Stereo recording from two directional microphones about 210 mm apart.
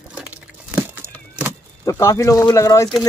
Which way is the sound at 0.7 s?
10° right (ahead or behind).